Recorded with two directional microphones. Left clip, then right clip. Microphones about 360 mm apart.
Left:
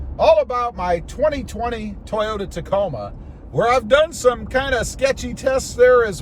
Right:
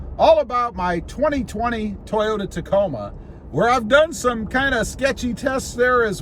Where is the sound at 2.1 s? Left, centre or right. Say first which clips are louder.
Right 1 dB; centre.